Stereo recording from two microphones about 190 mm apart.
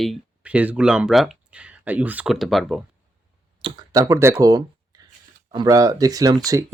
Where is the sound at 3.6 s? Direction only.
25° right (ahead or behind).